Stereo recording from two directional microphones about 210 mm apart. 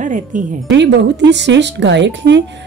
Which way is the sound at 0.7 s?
55° right (ahead or behind).